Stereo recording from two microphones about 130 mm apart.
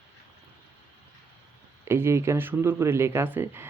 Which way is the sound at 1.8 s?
20° right (ahead or behind).